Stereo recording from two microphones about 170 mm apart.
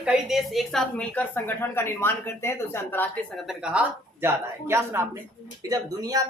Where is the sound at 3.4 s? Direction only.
5° right (ahead or behind).